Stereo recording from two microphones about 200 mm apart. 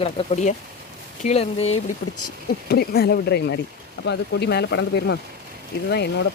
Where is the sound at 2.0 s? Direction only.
60° left (ahead or behind).